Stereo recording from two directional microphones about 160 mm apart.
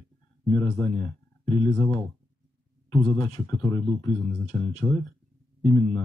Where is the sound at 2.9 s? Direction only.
25° left (ahead or behind).